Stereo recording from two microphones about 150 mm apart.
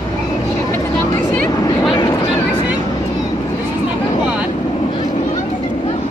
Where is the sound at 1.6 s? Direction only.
25° left (ahead or behind).